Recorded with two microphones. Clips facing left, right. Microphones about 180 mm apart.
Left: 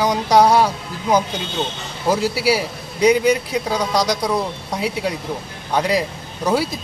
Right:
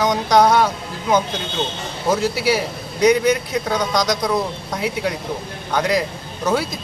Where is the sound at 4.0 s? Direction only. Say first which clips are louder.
Even; 30° left (ahead or behind).